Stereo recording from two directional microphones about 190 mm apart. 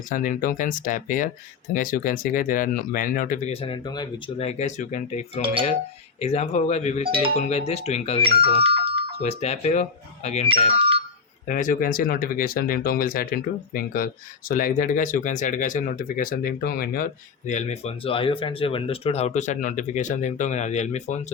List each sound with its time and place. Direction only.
0.1 s speech: 45° left (ahead or behind); by 4.1 s 20° left (ahead or behind)
4.4 s speech: 35° left (ahead or behind)
7.0 s speech: 30° right (ahead or behind)
7.3 s speech: 35° left (ahead or behind)
8.2 s speech: 30° right (ahead or behind)
9.2 s speech: 35° left (ahead or behind)
10.7 s a sound: 30° right (ahead or behind)
11.4 s speech: 45° left (ahead or behind)